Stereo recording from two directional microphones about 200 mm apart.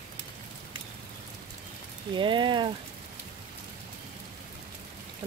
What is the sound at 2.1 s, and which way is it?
Speech, 25° right (ahead or behind).